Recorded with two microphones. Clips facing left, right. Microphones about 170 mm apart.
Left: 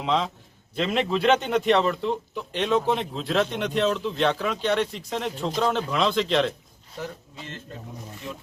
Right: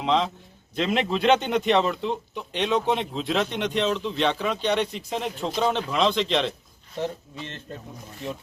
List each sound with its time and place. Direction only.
0.0 s a man's voice: 5° left (ahead or behind)
7.0 s speech: 25° right (ahead or behind)